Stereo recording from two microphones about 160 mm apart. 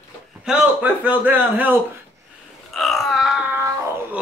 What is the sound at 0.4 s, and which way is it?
A man's voice, 5° right (ahead or behind).